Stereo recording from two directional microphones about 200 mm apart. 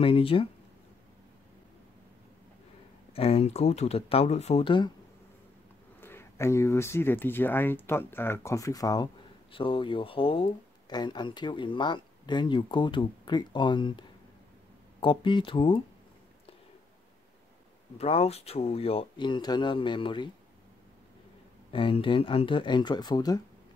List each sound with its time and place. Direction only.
0.0 s speech: 25° left (ahead or behind)
3.1 s speech: 30° left (ahead or behind)
5.9 s speech: 10° left (ahead or behind)
17.9 s speech: 30° left (ahead or behind)
21.7 s speech: 25° left (ahead or behind)